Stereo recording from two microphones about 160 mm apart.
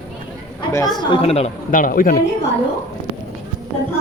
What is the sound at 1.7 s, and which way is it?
Speech, 60° left (ahead or behind).